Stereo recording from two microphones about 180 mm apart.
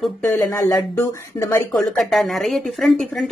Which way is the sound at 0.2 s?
15° left (ahead or behind).